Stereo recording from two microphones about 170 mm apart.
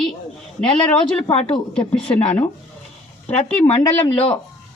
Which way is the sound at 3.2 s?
40° left (ahead or behind).